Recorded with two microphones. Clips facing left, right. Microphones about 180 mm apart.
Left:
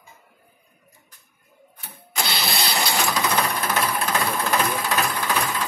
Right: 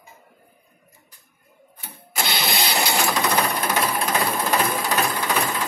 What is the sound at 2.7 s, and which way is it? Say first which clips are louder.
Engine: right 1 dB; 20° right (ahead or behind).